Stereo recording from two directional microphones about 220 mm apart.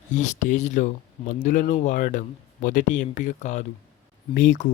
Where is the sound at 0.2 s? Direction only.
35° left (ahead or behind).